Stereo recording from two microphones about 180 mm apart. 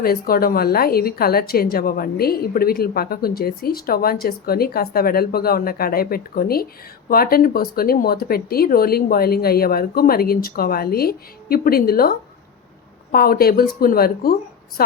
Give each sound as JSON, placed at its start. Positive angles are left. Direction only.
{"t": 0.0, "sound": "a woman's voice", "side_deg": 55}